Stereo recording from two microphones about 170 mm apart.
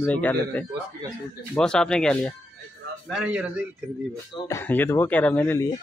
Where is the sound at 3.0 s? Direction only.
5° right (ahead or behind).